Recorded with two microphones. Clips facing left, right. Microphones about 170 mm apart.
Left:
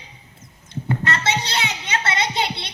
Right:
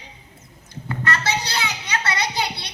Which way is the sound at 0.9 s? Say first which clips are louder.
Left 1 dB; 25° left (ahead or behind).